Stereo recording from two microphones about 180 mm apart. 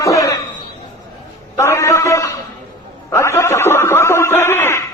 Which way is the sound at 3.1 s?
15° left (ahead or behind).